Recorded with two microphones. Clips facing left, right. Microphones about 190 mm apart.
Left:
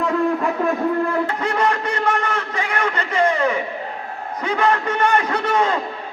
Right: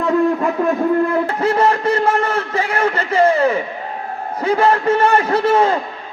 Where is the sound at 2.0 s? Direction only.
25° right (ahead or behind).